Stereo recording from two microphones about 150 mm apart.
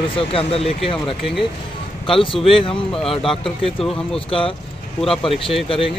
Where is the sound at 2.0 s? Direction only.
35° left (ahead or behind).